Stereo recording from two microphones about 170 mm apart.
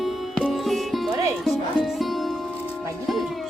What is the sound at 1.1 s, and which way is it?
Music, 20° right (ahead or behind).